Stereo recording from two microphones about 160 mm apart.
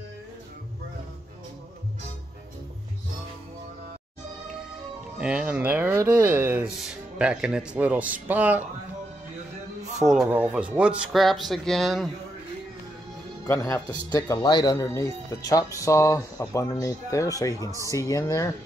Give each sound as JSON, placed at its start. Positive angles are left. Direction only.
{"t": 5.2, "sound": "speech", "side_deg": -5}
{"t": 9.9, "sound": "speech", "side_deg": 0}
{"t": 13.5, "sound": "speech", "side_deg": 20}
{"t": 17.6, "sound": "speech", "side_deg": -20}
{"t": 17.9, "sound": "speech", "side_deg": 20}